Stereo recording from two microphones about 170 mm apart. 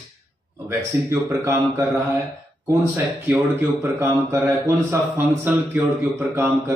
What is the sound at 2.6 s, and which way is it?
Speech, 15° right (ahead or behind).